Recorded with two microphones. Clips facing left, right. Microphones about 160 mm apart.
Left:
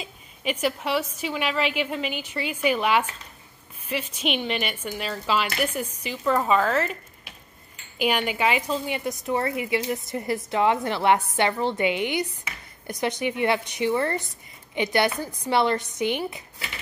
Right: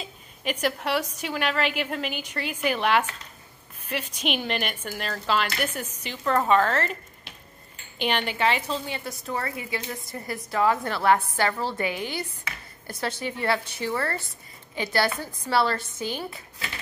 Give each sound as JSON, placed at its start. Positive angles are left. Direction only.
{"t": 0.0, "sound": "a woman's voice", "side_deg": 5}
{"t": 8.0, "sound": "a woman's voice", "side_deg": 10}